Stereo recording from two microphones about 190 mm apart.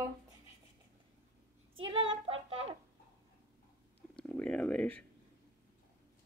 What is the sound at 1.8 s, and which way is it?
Child singing, 25° right (ahead or behind).